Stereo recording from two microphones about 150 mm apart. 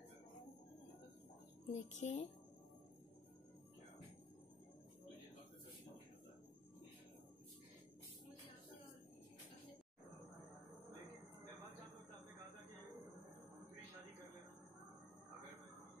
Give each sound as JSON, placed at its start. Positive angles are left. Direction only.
{"t": 1.7, "sound": "a woman's voice", "side_deg": 50}